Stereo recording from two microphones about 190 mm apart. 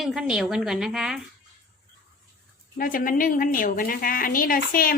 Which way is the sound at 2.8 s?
45° left (ahead or behind).